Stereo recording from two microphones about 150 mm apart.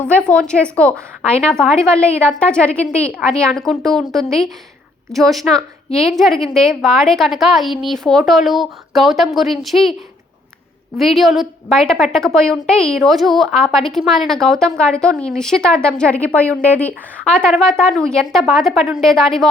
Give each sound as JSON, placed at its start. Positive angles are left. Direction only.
{"t": 0.0, "sound": "a woman's voice", "side_deg": 10}
{"t": 10.9, "sound": "a woman's voice", "side_deg": 0}